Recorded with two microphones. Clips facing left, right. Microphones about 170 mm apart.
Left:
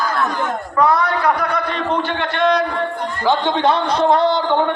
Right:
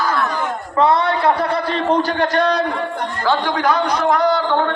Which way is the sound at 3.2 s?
20° left (ahead or behind).